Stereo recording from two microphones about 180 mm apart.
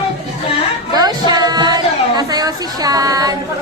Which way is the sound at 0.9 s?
20° right (ahead or behind).